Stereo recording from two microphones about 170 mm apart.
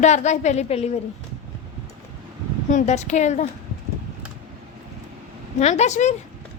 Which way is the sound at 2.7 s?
45° left (ahead or behind).